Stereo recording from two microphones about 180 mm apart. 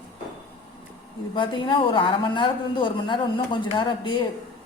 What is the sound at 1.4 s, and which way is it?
Speech, 25° left (ahead or behind).